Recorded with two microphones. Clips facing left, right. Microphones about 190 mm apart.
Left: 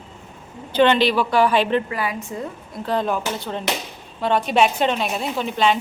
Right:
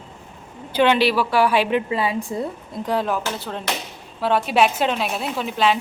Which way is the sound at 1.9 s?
25° right (ahead or behind).